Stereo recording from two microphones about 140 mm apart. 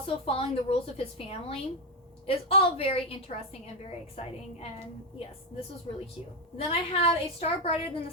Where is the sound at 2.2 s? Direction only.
45° left (ahead or behind).